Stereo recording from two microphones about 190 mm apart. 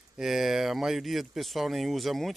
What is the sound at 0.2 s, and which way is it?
Speech, centre (ahead or behind).